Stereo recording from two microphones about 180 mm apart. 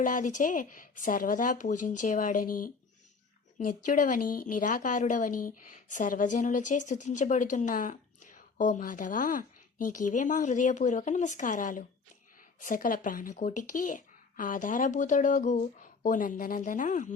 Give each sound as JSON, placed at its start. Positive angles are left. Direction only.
{"t": 0.0, "sound": "a woman's voice", "side_deg": 45}